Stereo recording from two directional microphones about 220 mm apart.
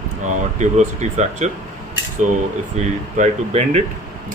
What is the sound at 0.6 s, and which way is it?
Speech, 35° right (ahead or behind).